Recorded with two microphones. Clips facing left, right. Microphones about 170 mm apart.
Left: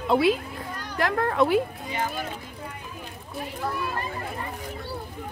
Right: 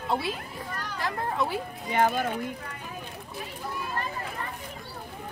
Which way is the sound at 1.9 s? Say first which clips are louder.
Right 6 dB; 55° right (ahead or behind).